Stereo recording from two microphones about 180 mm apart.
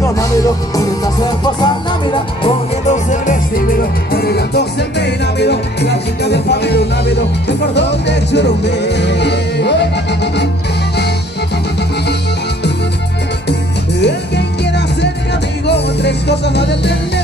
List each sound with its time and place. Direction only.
0.7 s music: 20° left (ahead or behind)
2.9 s music: 45° left (ahead or behind)
4.1 s music: 60° left (ahead or behind)
14.0 s music: 70° left (ahead or behind)